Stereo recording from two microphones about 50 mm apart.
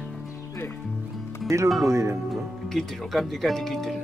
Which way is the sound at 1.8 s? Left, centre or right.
Right.